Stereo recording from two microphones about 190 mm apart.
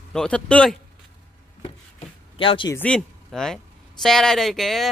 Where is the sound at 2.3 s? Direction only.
25° left (ahead or behind).